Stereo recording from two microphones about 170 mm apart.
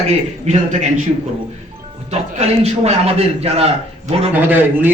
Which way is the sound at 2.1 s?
40° right (ahead or behind).